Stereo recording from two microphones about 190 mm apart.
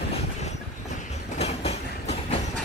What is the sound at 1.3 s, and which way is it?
Train, 35° left (ahead or behind).